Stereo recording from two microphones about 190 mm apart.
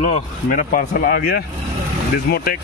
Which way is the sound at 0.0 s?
40° left (ahead or behind).